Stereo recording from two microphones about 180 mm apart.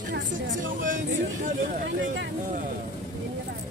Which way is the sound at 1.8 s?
75° right (ahead or behind).